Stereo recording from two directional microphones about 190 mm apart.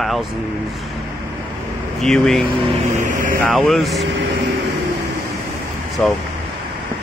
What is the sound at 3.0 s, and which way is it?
Vehicle, 45° right (ahead or behind).